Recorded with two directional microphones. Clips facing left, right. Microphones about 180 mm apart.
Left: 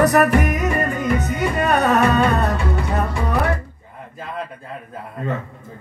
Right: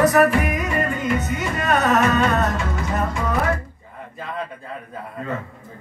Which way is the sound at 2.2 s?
35° left (ahead or behind).